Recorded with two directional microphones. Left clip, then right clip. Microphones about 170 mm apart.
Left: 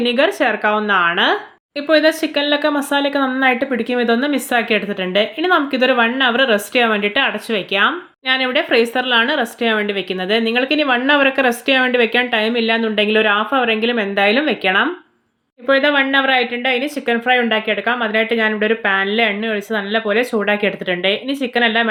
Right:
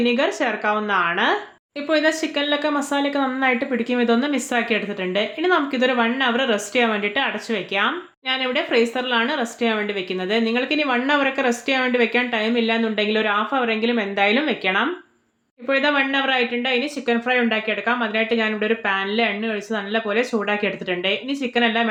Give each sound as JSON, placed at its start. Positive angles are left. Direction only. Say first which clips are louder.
{"t": 0.0, "sound": "a woman's voice", "louder": "left 5 dB", "side_deg": 25}